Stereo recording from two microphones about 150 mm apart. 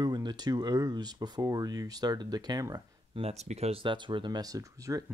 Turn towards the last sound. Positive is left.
turn(degrees=-25)  # may be behind; listen again after turning